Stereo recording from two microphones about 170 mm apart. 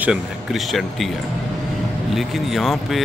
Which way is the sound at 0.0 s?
5° right (ahead or behind).